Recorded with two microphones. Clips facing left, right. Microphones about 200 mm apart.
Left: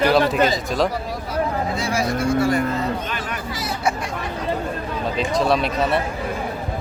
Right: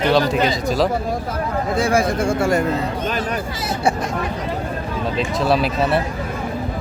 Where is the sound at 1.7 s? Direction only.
50° right (ahead or behind).